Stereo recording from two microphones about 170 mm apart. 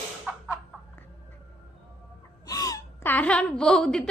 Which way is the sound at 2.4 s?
20° left (ahead or behind).